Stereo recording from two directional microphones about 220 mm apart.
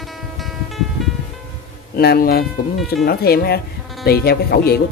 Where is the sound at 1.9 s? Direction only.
45° left (ahead or behind).